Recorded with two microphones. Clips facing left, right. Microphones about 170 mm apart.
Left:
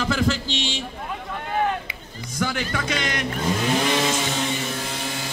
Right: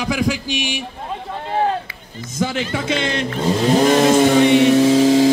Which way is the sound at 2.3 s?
20° right (ahead or behind).